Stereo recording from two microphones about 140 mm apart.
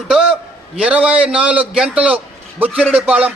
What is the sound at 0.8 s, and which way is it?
A man's voice, 10° right (ahead or behind).